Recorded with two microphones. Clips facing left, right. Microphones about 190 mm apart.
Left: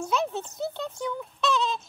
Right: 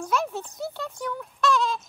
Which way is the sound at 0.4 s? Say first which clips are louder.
Left 1 dB; 5° right (ahead or behind).